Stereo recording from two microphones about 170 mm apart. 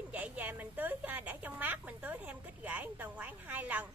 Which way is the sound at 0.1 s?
10° right (ahead or behind).